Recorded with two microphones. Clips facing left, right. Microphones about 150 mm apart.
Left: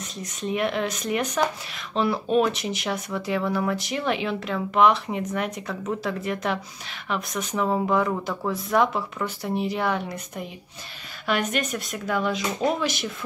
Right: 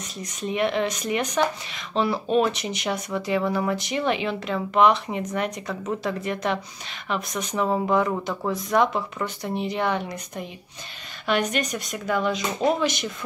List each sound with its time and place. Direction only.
0.2 s speech: centre (ahead or behind)